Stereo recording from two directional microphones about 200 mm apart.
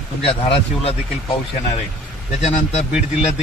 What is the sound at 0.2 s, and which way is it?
Speech, 30° left (ahead or behind).